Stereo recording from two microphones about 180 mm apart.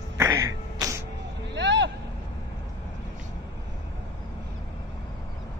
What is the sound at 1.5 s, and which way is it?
Vehicle, 80° right.